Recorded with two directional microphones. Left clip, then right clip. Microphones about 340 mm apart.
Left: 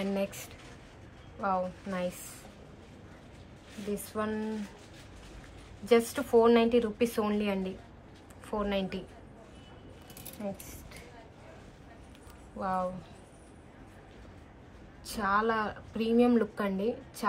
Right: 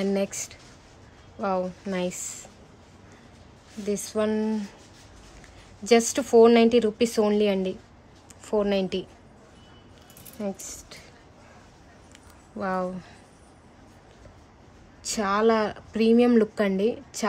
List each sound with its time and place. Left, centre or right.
0.0 s a woman's voice: centre
3.9 s speech: centre
5.9 s a woman's voice: centre
10.4 s a woman's voice: right
12.5 s a woman's voice: right
15.0 s a woman's voice: right